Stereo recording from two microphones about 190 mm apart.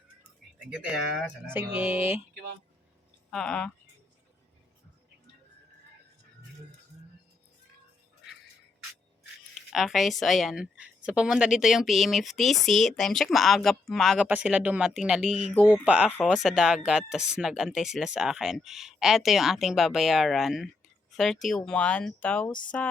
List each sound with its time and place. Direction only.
0.7 s speech: 5° right (ahead or behind)
2.3 s speech: 55° right (ahead or behind)
3.2 s speech: centre (ahead or behind)
9.7 s a woman's voice: centre (ahead or behind)
16.0 s a woman's voice: 5° left (ahead or behind)